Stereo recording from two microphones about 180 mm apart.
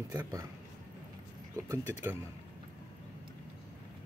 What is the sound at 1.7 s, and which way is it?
Speech, 15° right (ahead or behind).